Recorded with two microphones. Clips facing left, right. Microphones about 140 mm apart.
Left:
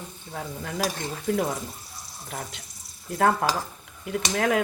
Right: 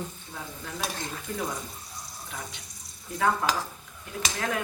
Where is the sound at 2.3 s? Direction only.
60° left (ahead or behind).